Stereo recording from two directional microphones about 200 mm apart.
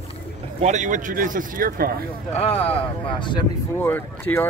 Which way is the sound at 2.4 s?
30° left (ahead or behind).